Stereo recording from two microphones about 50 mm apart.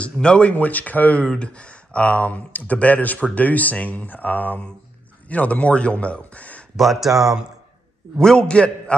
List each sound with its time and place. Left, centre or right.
0.0 s speech: left
1.2 s speech: centre
6.8 s speech: centre
8.2 s speech: centre